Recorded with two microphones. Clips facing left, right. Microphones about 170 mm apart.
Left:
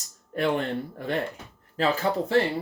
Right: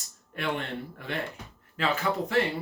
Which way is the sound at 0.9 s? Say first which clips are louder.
Left 6 dB; 40° left (ahead or behind).